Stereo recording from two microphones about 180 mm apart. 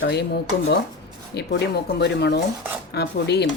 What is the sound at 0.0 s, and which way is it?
Speech, 65° left (ahead or behind).